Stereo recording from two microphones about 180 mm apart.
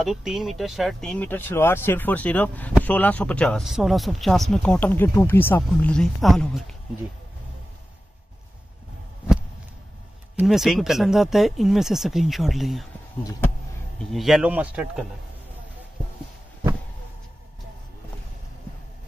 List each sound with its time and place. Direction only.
0.0 s speech: centre (ahead or behind)
10.3 s speech: centre (ahead or behind)
13.2 s speech: 20° left (ahead or behind)
14.1 s speech: centre (ahead or behind)